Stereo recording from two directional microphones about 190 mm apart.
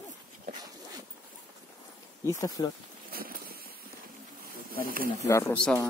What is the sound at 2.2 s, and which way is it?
Speech, 15° left (ahead or behind).